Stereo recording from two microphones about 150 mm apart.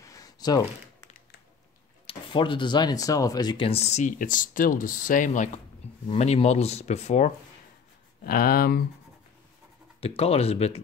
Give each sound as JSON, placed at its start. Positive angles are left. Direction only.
{"t": 0.0, "sound": "a sound", "side_deg": 25}
{"t": 2.0, "sound": "speech", "side_deg": 35}
{"t": 6.0, "sound": "speech", "side_deg": 45}
{"t": 8.2, "sound": "speech", "side_deg": 80}
{"t": 9.9, "sound": "speech", "side_deg": 40}